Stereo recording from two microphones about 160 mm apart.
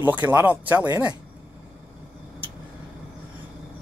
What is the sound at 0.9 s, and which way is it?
Speech, 25° right (ahead or behind).